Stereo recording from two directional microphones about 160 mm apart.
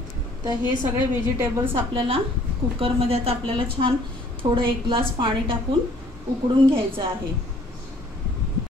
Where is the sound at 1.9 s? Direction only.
35° right (ahead or behind).